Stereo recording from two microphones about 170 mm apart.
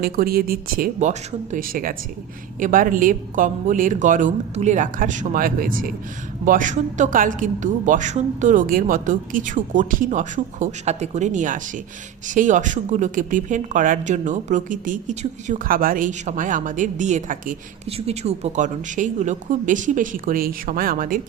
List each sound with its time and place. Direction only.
0.0 s speech: 60° right (ahead or behind)
17.8 s speech: 35° right (ahead or behind); by 21.2 s 55° right (ahead or behind)